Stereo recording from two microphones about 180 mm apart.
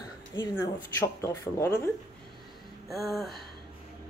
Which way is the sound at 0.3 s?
20° left (ahead or behind).